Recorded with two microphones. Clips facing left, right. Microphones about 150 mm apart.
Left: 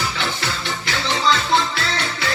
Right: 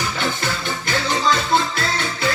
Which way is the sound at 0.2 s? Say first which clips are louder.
Right 2 dB; 50° right (ahead or behind).